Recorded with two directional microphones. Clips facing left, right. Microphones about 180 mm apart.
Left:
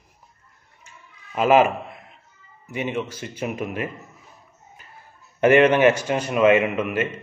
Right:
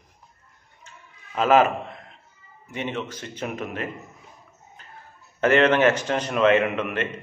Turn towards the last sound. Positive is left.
turn(degrees=10)  # may be behind; listen again after turning